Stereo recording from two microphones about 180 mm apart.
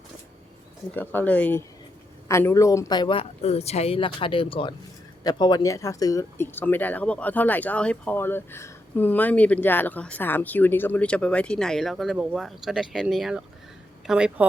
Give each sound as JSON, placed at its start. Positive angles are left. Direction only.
{"t": 0.9, "sound": "speech", "side_deg": 10}